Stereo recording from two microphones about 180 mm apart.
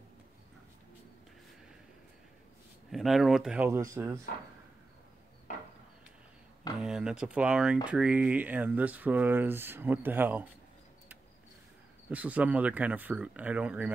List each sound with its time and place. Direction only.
2.9 s speech: centre (ahead or behind)
5.5 s a sound: 45° left (ahead or behind)
6.8 s speech: 5° right (ahead or behind)
12.1 s speech: 10° right (ahead or behind)